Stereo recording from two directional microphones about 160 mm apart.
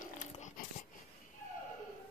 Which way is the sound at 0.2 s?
50° left (ahead or behind).